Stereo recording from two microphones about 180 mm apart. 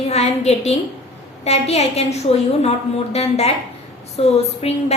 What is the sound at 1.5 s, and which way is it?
A woman's voice, 35° left (ahead or behind).